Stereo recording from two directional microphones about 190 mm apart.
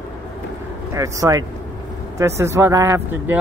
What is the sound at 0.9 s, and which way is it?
Speech, 15° right (ahead or behind).